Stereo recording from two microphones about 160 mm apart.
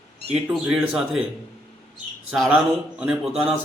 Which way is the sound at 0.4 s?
5° right (ahead or behind).